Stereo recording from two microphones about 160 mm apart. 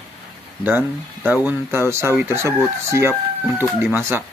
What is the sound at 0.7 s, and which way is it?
Speech, 10° right (ahead or behind).